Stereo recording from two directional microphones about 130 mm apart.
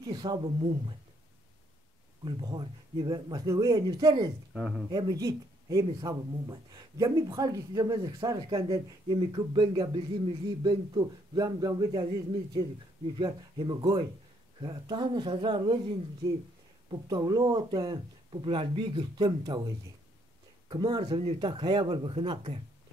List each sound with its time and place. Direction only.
0.0 s speech: 35° right (ahead or behind)
2.2 s speech: 35° right (ahead or behind)
4.6 s speech: 5° right (ahead or behind)
4.8 s speech: 30° right (ahead or behind)
16.9 s speech: 30° right (ahead or behind)
20.6 s speech: 35° right (ahead or behind)
21.0 s speech: 50° right (ahead or behind)